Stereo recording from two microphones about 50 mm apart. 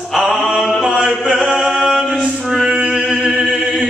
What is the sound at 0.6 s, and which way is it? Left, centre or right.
Chant, centre.